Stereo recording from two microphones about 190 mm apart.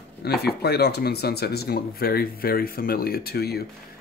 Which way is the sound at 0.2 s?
55° left (ahead or behind).